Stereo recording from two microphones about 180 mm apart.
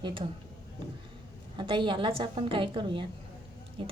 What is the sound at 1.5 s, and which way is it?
A woman's voice, 25° right (ahead or behind).